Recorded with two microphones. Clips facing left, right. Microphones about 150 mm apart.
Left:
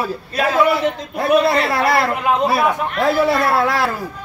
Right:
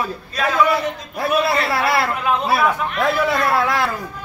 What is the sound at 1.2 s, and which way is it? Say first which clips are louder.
A man's voice: left 4 dB; 25° left (ahead or behind).